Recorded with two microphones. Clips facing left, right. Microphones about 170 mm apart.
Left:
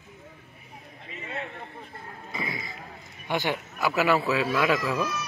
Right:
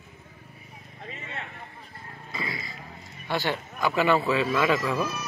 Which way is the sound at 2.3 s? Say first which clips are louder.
Left 1 dB; 20° left (ahead or behind).